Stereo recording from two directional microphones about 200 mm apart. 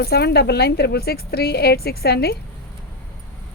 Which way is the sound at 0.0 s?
55° left (ahead or behind).